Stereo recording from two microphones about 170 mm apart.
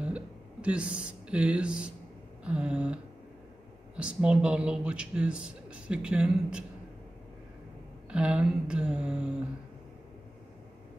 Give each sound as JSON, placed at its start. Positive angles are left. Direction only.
{"t": 0.0, "sound": "a sound", "side_deg": -5}
{"t": 2.4, "sound": "speech", "side_deg": -5}
{"t": 8.1, "sound": "speech", "side_deg": -5}